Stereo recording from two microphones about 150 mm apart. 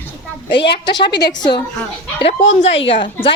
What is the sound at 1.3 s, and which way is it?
Speech, 25° left (ahead or behind).